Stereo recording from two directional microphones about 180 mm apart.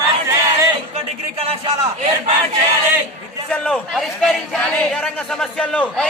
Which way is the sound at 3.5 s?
5° left (ahead or behind).